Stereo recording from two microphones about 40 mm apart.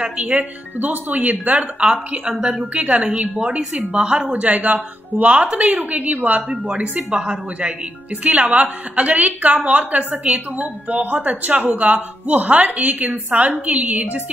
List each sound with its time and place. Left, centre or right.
0.2 s a woman's voice: right
0.7 s a woman's voice: right
2.3 s a woman's voice: right
4.3 s a woman's voice: right